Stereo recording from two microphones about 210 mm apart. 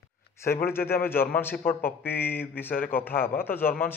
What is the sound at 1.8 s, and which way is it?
A man's voice, 10° left (ahead or behind).